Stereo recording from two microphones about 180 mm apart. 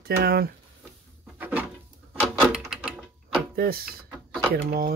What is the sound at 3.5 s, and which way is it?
Speech, 55° right (ahead or behind).